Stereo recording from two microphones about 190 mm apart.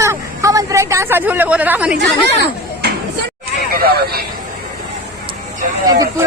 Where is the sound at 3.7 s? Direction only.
55° right (ahead or behind).